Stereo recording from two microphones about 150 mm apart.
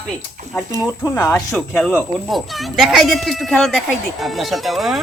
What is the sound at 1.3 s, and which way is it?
Speech, centre (ahead or behind).